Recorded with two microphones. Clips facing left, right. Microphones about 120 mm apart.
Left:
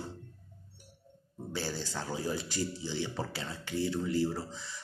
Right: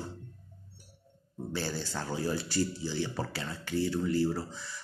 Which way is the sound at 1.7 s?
20° left (ahead or behind).